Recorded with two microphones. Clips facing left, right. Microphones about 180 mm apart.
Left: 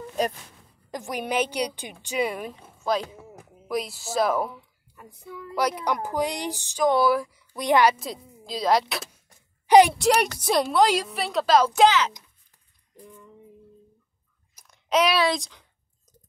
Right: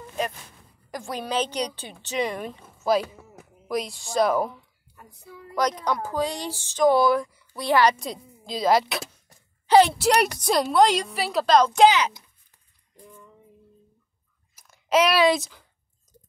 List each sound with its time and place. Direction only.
0.9 s a woman's voice: 20° left (ahead or behind); by 4.6 s centre (ahead or behind)
5.6 s speech: 10° left (ahead or behind)
6.8 s a woman's voice: 5° left (ahead or behind)
7.5 s speech: 15° left (ahead or behind)
8.0 s speech: centre (ahead or behind)
9.7 s a child's voice: 15° left (ahead or behind)
9.9 s a woman's voice: centre (ahead or behind)
14.7 s a sound: centre (ahead or behind)
15.3 s a woman's voice: 5° right (ahead or behind)